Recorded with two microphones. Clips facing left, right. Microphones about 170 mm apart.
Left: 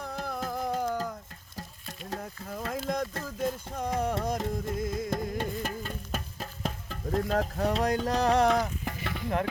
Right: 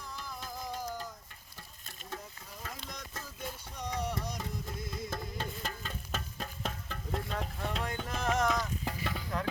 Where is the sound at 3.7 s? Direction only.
55° left (ahead or behind).